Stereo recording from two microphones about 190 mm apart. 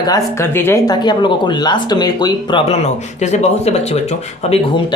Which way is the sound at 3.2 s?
35° left (ahead or behind).